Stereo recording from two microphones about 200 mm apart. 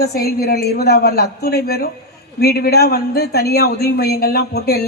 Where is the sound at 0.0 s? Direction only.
50° left (ahead or behind).